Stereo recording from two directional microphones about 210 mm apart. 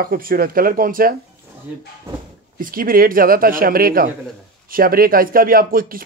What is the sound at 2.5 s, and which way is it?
Speech, 40° right (ahead or behind).